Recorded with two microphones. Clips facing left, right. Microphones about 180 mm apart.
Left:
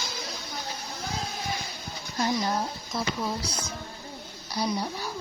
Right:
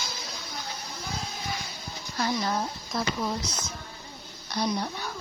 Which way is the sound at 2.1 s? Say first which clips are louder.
Left 1 dB; 20° left (ahead or behind).